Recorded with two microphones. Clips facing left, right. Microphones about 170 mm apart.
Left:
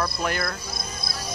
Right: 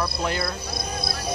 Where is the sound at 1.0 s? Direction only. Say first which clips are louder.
Right 5 dB; 60° right (ahead or behind).